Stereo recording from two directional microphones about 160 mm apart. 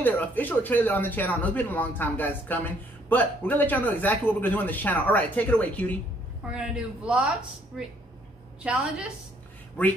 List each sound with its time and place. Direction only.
0.0 s a man's voice: 10° left (ahead or behind)
6.5 s a man's voice: 5° right (ahead or behind)
9.8 s a man's voice: 10° left (ahead or behind)